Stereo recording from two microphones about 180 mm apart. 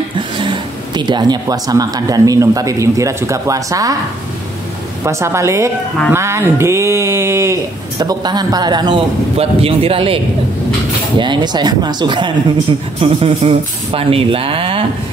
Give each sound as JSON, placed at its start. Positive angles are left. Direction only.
{"t": 0.4, "sound": "speech", "side_deg": -25}
{"t": 5.0, "sound": "a sound", "side_deg": -15}
{"t": 8.0, "sound": "speech", "side_deg": -25}